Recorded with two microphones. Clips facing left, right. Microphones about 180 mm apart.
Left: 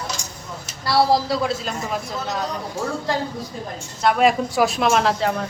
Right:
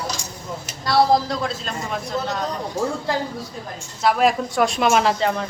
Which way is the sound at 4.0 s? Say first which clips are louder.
Left 1 dB; centre (ahead or behind).